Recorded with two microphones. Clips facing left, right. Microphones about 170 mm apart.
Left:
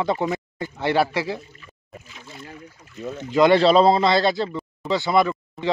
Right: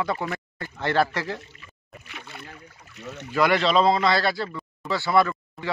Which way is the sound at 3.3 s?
25° left (ahead or behind).